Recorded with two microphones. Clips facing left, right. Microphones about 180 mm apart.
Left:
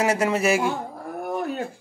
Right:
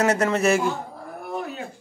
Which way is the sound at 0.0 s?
10° left (ahead or behind).